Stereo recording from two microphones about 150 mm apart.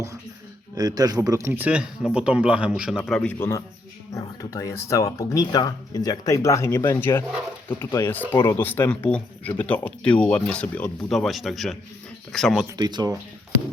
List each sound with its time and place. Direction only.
0.8 s speech: 25° right (ahead or behind); by 3.0 s 5° right (ahead or behind)
3.0 s speech: 5° left (ahead or behind)
12.6 s speech: 25° right (ahead or behind)